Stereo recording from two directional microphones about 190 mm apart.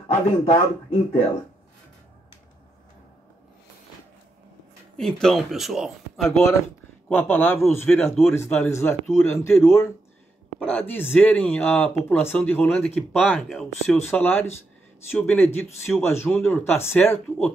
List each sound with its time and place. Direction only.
0.1 s speech: 30° left (ahead or behind)
4.9 s a man's voice: 5° left (ahead or behind)
10.6 s a man's voice: 10° left (ahead or behind)